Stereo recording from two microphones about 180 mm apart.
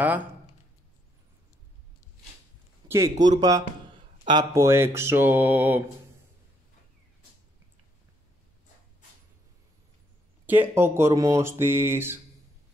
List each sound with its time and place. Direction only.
0.0 s speech: 10° right (ahead or behind)
2.9 s speech: 20° right (ahead or behind)
10.4 s speech: 10° right (ahead or behind)